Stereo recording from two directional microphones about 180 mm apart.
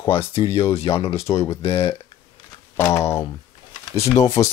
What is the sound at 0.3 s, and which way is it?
Speech, 30° left (ahead or behind).